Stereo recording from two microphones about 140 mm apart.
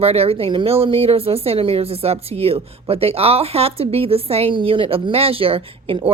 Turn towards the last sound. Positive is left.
turn(degrees=-40)  # may be behind; listen again after turning